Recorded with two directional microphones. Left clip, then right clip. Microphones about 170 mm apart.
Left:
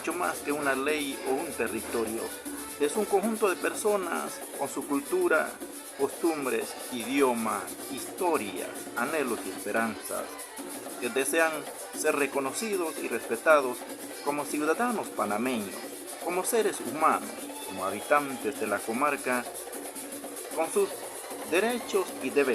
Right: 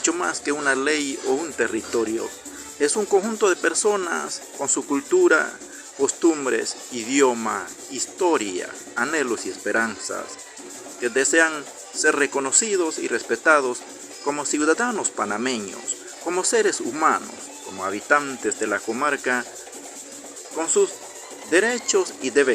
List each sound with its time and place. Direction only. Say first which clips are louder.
0.0 s speech: right 7 dB; 15° right (ahead or behind)
11.0 s speech: right 8 dB; 10° right (ahead or behind)
20.6 s speech: right 7 dB; 5° right (ahead or behind)